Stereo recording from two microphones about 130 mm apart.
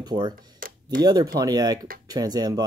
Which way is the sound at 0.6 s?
90° right.